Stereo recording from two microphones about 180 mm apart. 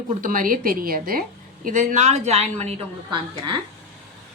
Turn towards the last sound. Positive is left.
turn(degrees=-30)  # may be behind; listen again after turning